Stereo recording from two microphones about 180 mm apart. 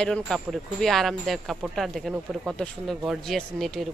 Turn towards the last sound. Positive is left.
turn(degrees=0)  # may be behind; listen again after turning